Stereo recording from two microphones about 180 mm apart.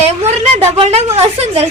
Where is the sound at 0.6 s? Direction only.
35° right (ahead or behind).